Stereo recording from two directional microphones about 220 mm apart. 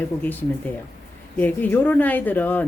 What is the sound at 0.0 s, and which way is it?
Speech, 10° left (ahead or behind).